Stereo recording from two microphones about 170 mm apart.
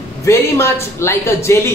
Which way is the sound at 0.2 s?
15° left (ahead or behind).